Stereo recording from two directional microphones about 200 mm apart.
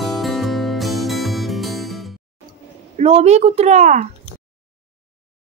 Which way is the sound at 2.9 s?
30° right (ahead or behind).